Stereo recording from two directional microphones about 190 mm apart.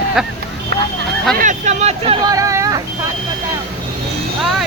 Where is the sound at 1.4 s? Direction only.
40° right (ahead or behind).